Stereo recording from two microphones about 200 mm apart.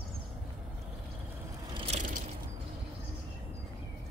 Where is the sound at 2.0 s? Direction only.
40° right (ahead or behind).